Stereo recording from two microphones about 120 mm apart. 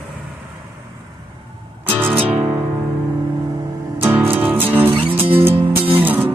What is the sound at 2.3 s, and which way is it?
Music, 15° right (ahead or behind).